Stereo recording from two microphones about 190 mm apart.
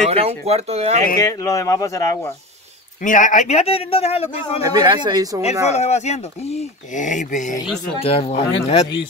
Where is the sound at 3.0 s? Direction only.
45° left (ahead or behind).